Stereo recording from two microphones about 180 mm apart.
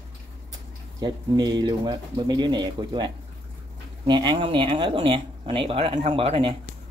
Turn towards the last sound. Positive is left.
turn(degrees=-30)  # may be behind; listen again after turning